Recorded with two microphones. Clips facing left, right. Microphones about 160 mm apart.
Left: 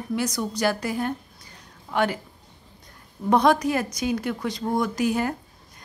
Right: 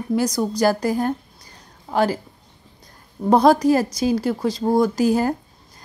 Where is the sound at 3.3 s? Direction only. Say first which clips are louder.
Right 5 dB; 35° right (ahead or behind).